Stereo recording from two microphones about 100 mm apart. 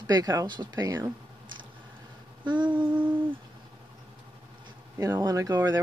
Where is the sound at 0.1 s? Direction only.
40° right (ahead or behind).